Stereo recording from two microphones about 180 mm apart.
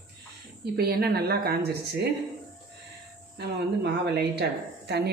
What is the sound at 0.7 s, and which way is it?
A woman's voice, 60° right (ahead or behind).